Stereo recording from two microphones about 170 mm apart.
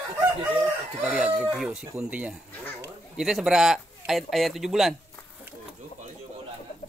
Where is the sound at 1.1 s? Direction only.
5° right (ahead or behind).